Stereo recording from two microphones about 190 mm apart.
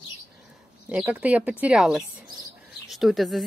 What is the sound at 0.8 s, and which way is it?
Speech, 5° right (ahead or behind).